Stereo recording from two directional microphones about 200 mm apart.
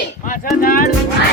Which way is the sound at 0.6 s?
45° left (ahead or behind).